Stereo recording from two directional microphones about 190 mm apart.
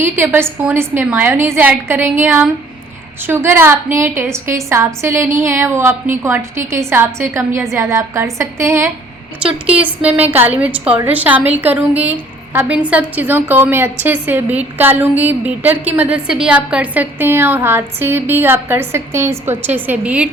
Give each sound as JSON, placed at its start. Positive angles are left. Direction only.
{"t": 0.0, "sound": "a woman's voice", "side_deg": -10}
{"t": 9.4, "sound": "a woman's voice", "side_deg": -30}
{"t": 9.8, "sound": "a woman's voice", "side_deg": -10}